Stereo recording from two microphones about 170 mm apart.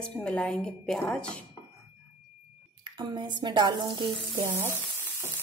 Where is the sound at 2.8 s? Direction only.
25° right (ahead or behind).